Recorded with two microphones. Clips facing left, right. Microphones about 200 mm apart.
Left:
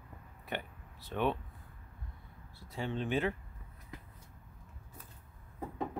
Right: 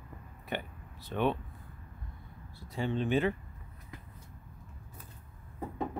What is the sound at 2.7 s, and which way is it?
Speech, centre (ahead or behind).